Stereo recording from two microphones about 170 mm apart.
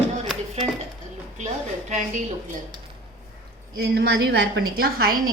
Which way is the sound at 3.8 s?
75° right (ahead or behind).